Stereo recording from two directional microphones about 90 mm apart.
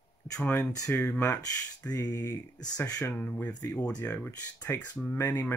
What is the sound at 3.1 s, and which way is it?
Speech, 15° left (ahead or behind).